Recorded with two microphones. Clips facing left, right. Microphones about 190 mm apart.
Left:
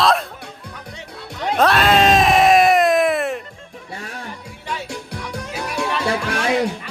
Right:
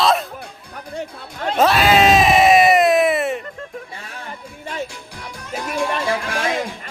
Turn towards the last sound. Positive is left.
turn(degrees=70)  # may be behind; listen again after turning